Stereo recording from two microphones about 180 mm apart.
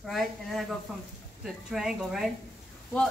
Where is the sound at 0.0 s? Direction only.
Centre (ahead or behind).